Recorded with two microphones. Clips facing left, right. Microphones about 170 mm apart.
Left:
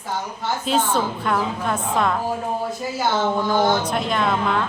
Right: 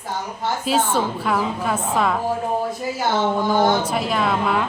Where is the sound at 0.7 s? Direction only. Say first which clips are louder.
Even; 5° right (ahead or behind).